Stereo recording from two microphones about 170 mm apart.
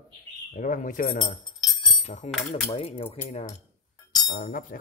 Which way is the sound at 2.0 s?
40° left (ahead or behind).